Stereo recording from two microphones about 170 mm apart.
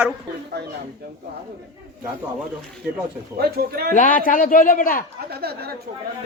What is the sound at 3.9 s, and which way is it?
A man's voice, 50° left (ahead or behind).